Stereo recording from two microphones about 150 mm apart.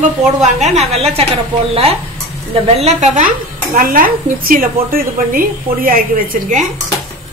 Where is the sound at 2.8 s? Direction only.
50° right (ahead or behind).